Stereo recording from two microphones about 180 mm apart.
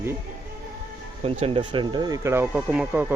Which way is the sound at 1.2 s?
30° right (ahead or behind).